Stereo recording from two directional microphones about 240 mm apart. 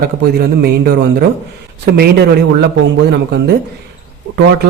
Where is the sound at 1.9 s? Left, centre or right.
Right.